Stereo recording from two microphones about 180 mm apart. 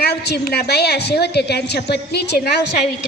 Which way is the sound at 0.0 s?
65° left (ahead or behind).